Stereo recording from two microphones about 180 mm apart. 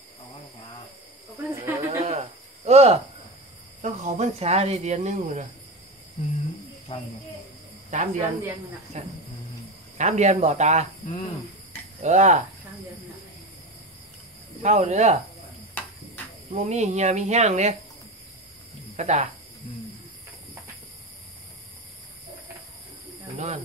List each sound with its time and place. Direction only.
1.3 s snake: 10° right (ahead or behind)
2.0 s cricket: 40° right (ahead or behind)
3.8 s speech: 40° right (ahead or behind)
6.1 s cricket: 40° left (ahead or behind)
7.9 s speech: 45° right (ahead or behind)
11.1 s cricket: 30° left (ahead or behind)
12.0 s speech: 40° right (ahead or behind)
14.6 s speech: 40° right (ahead or behind)
16.4 s speech: 40° right (ahead or behind)
18.9 s speech: 40° right (ahead or behind)
23.3 s speech: 40° right (ahead or behind)